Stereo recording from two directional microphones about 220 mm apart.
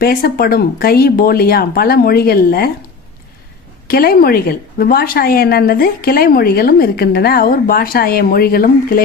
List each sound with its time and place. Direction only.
0.0 s a woman's voice: 45° left (ahead or behind)
3.8 s a woman's voice: 45° left (ahead or behind)